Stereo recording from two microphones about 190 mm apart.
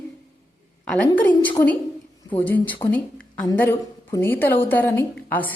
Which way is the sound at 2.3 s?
10° left (ahead or behind).